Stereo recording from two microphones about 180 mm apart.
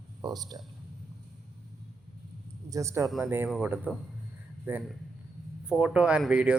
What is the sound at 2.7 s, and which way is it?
A man's voice, 15° right (ahead or behind).